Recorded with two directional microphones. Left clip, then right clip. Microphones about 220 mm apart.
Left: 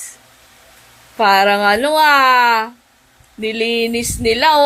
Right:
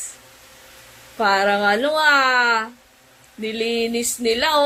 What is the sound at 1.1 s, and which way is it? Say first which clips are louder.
Speech: left 6 dB; 30° left (ahead or behind).